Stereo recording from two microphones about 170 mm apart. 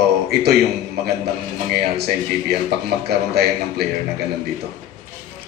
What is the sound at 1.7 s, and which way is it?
A man's voice, 70° right (ahead or behind).